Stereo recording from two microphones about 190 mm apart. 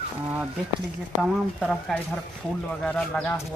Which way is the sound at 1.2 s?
5° left (ahead or behind).